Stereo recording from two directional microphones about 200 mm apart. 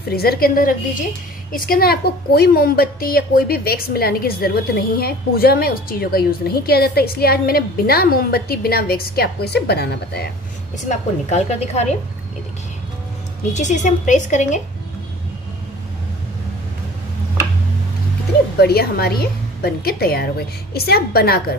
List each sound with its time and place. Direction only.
0.1 s a woman's voice: 50° left (ahead or behind)
10.9 s a woman's voice: 35° left (ahead or behind)
13.5 s a woman's voice: 35° left (ahead or behind)
18.6 s a woman's voice: 50° left (ahead or behind)